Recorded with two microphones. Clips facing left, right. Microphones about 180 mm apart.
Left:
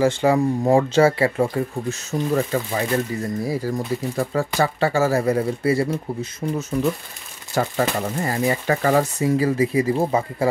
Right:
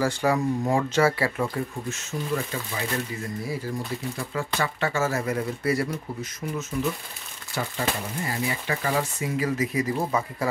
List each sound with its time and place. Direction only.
0.0 s speech: 25° left (ahead or behind)
1.5 s speech: 40° left (ahead or behind)
7.7 s speech: 60° left (ahead or behind)
8.5 s speech: 45° left (ahead or behind)
9.4 s speech: 30° left (ahead or behind)